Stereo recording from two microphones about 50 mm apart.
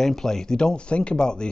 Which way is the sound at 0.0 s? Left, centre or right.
Centre.